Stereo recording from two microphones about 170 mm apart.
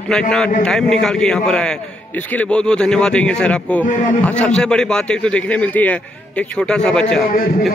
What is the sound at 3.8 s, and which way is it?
Speech, 50° left (ahead or behind).